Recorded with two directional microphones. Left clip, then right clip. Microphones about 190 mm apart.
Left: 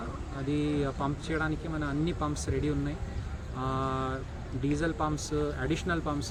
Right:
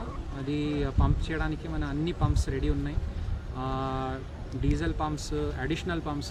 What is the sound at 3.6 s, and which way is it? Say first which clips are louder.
Speech: even; 5° right (ahead or behind).